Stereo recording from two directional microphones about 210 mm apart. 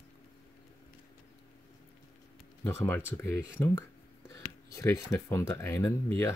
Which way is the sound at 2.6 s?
10° left (ahead or behind).